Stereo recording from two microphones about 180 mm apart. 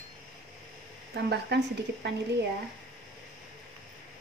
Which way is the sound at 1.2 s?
65° right (ahead or behind).